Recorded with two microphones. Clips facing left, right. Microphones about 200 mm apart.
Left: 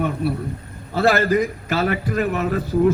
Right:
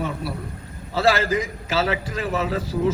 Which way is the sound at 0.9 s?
55° left (ahead or behind).